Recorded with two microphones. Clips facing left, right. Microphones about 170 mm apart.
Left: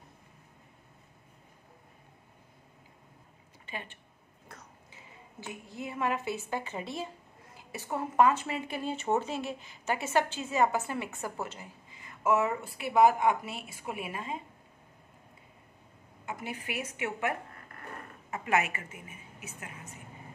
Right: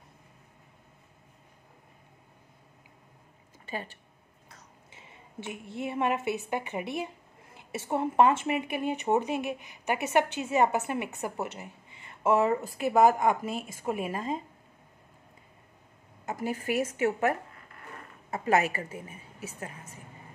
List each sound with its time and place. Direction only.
3.6 s speech: 40° right (ahead or behind)
4.9 s a sound: 25° right (ahead or behind)
5.7 s speech: 25° right (ahead or behind); by 14.4 s 40° right (ahead or behind)
16.3 s a woman's voice: 40° right (ahead or behind)